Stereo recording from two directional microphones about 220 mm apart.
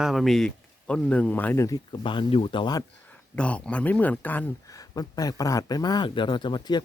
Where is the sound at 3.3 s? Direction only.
5° left (ahead or behind).